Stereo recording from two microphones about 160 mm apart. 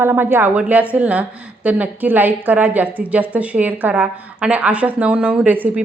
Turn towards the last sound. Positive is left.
turn(degrees=-10)  # may be behind; listen again after turning